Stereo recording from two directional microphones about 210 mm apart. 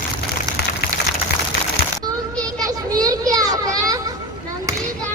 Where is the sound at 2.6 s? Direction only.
15° right (ahead or behind).